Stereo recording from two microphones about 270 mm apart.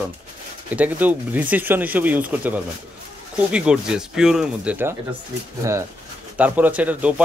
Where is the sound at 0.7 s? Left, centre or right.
Centre.